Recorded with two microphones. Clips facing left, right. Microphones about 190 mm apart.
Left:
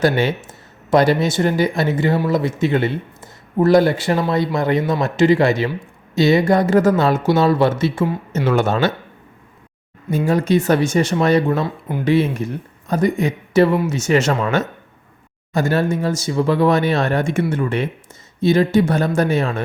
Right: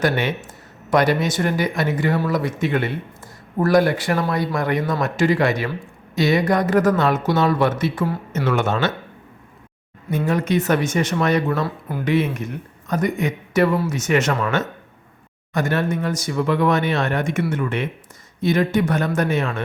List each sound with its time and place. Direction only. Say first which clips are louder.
0.0 s a man's voice: left 4 dB; 30° left (ahead or behind)
10.2 s a man's voice: left 4 dB; 30° left (ahead or behind)